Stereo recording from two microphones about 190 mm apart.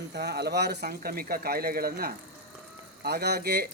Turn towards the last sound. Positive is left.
turn(degrees=-55)  # may be behind; listen again after turning